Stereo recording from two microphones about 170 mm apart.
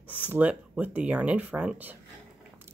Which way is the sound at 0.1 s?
10° right (ahead or behind).